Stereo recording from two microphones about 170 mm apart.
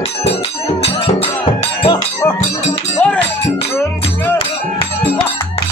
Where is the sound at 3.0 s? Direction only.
5° left (ahead or behind).